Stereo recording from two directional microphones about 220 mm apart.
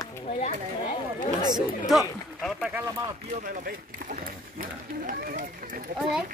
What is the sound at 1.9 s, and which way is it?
Speech, centre (ahead or behind).